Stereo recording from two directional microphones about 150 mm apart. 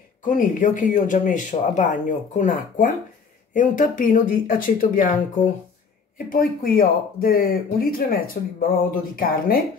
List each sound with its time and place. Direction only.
0.2 s speech: 60° left (ahead or behind)
6.1 s speech: 70° left (ahead or behind)